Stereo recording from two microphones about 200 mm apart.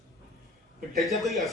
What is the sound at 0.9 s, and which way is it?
Speech, centre (ahead or behind).